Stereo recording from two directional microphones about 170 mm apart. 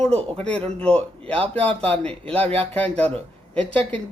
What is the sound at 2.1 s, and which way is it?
Speech, 35° right (ahead or behind).